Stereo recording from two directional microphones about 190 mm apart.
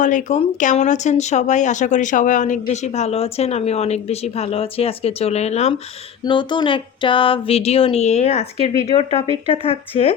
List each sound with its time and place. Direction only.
0.0 s speech: 40° left (ahead or behind)
6.2 s speech: 25° left (ahead or behind)